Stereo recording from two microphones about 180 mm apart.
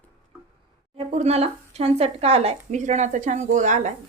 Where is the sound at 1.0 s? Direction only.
40° right (ahead or behind).